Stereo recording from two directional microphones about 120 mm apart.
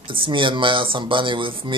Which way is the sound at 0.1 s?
45° right (ahead or behind).